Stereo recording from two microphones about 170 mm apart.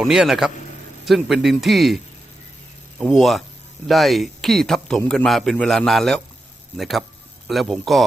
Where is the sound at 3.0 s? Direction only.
Centre (ahead or behind).